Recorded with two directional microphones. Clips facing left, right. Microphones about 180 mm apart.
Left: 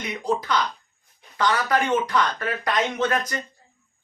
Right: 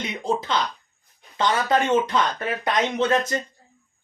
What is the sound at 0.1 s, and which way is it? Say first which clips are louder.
Speech: left 2 dB; 25° right (ahead or behind).